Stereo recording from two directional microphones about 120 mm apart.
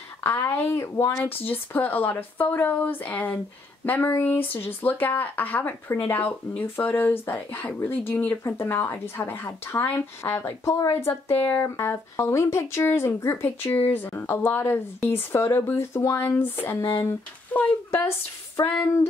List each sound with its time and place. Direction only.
0.2 s speech: 20° left (ahead or behind)